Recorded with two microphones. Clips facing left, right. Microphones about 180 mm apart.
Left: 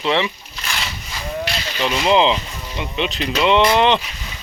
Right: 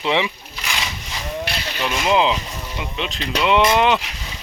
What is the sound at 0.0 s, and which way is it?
Speech, 15° right (ahead or behind).